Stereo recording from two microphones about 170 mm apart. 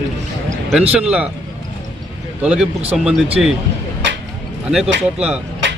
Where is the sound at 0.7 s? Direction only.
5° right (ahead or behind).